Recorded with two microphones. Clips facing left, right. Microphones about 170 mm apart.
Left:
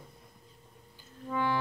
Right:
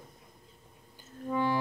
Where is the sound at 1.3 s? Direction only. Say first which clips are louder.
Right 1 dB; 15° right (ahead or behind).